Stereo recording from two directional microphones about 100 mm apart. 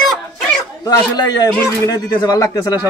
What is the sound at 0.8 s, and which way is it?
Speech, 40° left (ahead or behind).